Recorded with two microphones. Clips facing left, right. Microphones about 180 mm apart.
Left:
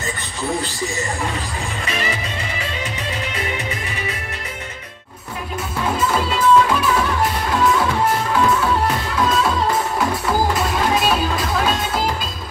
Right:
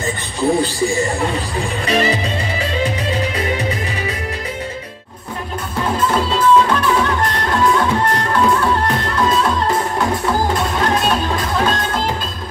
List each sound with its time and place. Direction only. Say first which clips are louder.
1.9 s music: right 9 dB; 35° right (ahead or behind)
3.3 s music: right 5 dB; 35° right (ahead or behind)
5.9 s music: right 3 dB; 10° left (ahead or behind)